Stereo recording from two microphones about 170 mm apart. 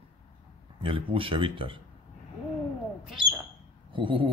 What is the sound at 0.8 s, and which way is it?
Speech, 30° right (ahead or behind).